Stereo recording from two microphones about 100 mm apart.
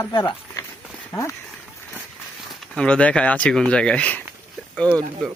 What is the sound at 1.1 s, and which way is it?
Speech, 30° left (ahead or behind).